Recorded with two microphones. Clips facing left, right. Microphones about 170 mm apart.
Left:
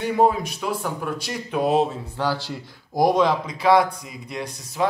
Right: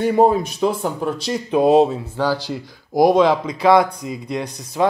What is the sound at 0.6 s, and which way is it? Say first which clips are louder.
Speech: right 5 dB; 30° right (ahead or behind).